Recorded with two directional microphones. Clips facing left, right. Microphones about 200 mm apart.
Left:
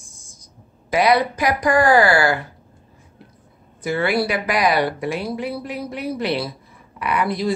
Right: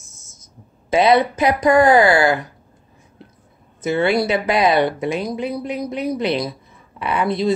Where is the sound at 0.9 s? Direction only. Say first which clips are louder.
Right 3 dB; 25° right (ahead or behind).